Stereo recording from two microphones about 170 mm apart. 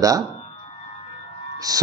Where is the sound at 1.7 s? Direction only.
20° right (ahead or behind).